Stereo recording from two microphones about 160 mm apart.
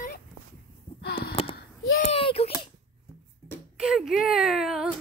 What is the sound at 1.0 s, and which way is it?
Gasp, 75° left (ahead or behind).